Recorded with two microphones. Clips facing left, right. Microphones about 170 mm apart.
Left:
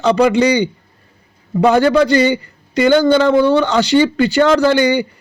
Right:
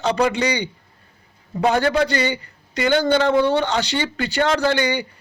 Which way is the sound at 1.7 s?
30° left (ahead or behind).